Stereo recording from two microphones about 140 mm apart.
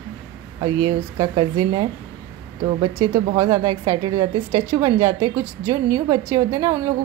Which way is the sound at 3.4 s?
25° right (ahead or behind).